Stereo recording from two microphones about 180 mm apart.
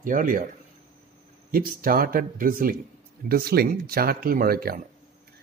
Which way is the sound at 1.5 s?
50° right (ahead or behind).